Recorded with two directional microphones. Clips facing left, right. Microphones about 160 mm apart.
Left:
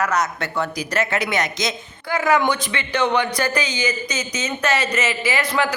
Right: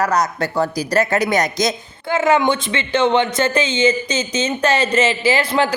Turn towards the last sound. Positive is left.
turn(degrees=-30)  # may be behind; listen again after turning